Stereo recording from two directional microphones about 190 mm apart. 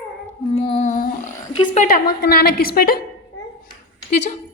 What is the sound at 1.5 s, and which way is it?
Speech, 25° left (ahead or behind).